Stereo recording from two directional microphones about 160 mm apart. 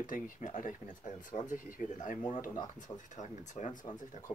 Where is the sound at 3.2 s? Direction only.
45° left (ahead or behind).